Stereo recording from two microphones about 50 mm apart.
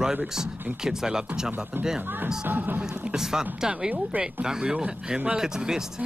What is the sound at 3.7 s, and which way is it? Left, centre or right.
Speech, right.